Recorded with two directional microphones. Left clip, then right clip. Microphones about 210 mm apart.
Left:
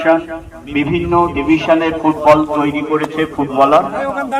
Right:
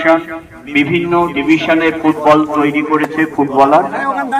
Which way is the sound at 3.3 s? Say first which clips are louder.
Right 1 dB; 15° left (ahead or behind).